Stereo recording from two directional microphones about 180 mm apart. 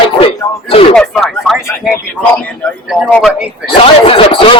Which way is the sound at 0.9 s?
Centre (ahead or behind).